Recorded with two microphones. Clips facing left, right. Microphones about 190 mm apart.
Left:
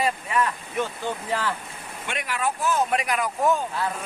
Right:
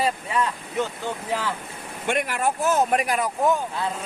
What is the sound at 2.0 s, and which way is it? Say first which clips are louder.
Speech: right 4 dB; 50° right (ahead or behind).